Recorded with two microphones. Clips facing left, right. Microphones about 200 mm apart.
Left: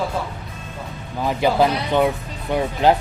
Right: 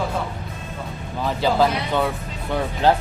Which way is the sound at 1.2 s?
15° left (ahead or behind).